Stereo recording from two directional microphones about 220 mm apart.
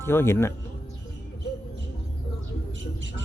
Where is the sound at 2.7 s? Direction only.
55° right (ahead or behind).